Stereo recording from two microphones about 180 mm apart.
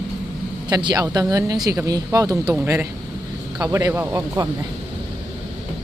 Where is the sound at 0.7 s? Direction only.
25° right (ahead or behind).